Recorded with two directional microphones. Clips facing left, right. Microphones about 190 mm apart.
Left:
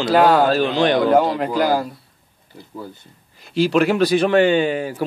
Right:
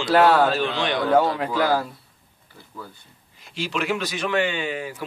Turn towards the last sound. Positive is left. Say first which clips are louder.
# left 9 dB
turn(degrees=35)  # may be behind; listen again after turning